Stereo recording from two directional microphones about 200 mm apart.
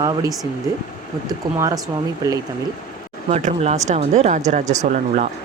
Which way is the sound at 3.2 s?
35° right (ahead or behind).